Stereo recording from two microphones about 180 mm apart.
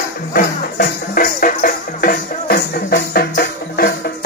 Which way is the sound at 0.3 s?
50° left (ahead or behind).